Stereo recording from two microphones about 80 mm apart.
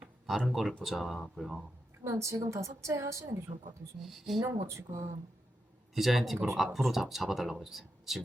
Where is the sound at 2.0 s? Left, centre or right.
Right.